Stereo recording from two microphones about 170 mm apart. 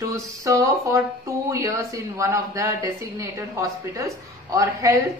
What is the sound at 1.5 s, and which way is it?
Speech, 15° right (ahead or behind).